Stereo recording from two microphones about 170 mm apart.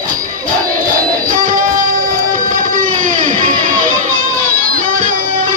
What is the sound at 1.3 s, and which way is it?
Music, 50° right (ahead or behind).